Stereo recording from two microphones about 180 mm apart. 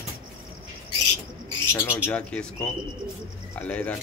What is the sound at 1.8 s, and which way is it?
Speech, 10° left (ahead or behind).